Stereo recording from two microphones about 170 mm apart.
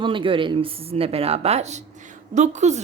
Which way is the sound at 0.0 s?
30° right (ahead or behind).